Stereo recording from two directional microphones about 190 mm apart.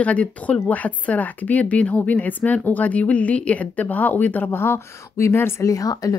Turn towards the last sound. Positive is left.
turn(degrees=20)  # may be behind; listen again after turning